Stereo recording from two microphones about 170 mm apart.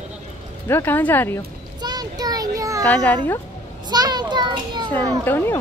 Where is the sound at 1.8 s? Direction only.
25° right (ahead or behind).